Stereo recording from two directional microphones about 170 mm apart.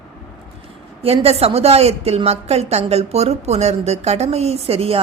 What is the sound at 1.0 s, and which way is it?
A woman's voice, 35° right (ahead or behind).